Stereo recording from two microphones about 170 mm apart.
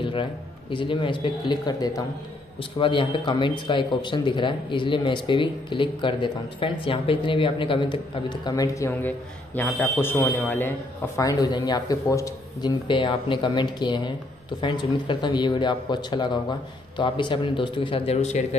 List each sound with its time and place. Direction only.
0.0 s a man's voice: 30° left (ahead or behind)